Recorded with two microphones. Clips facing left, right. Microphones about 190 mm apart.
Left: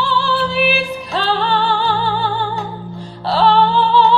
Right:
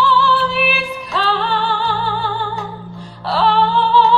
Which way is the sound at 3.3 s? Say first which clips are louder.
Left 2 dB; 30° left (ahead or behind).